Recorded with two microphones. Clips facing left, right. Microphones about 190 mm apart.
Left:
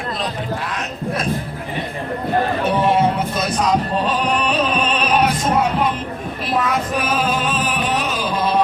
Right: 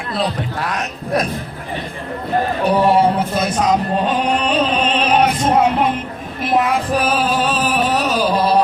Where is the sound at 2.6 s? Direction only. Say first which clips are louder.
Right 5 dB; 35° right (ahead or behind).